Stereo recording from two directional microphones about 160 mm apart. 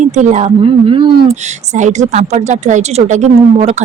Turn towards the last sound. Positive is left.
turn(degrees=-45)  # may be behind; listen again after turning